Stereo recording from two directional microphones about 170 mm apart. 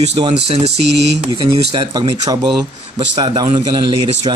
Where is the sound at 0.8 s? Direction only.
85° right.